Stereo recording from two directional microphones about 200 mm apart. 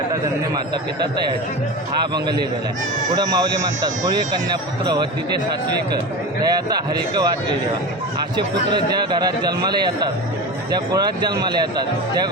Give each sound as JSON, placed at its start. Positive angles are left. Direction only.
{"t": 3.2, "sound": "speech", "side_deg": -20}
{"t": 6.4, "sound": "speech", "side_deg": -20}
{"t": 9.2, "sound": "speech", "side_deg": -20}